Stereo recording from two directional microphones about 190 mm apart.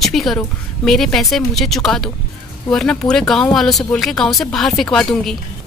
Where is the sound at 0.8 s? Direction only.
Centre (ahead or behind).